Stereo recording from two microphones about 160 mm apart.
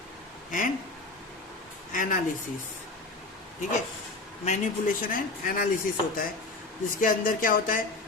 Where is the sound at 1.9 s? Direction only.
55° left (ahead or behind).